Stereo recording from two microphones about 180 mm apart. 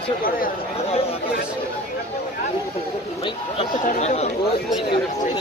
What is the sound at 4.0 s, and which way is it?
Speech, 35° left (ahead or behind).